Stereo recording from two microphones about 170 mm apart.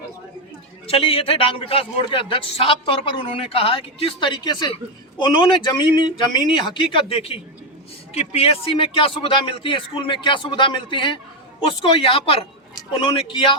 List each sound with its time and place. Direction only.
0.9 s a man's voice: 35° left (ahead or behind)